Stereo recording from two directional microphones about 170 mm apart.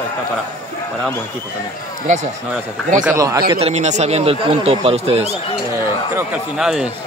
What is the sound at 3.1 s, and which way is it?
A man's voice, 20° right (ahead or behind).